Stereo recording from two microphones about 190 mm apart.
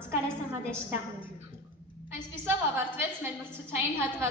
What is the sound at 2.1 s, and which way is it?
A woman's voice, 10° right (ahead or behind).